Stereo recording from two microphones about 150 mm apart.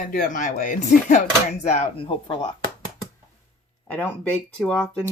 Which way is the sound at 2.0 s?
35° left (ahead or behind).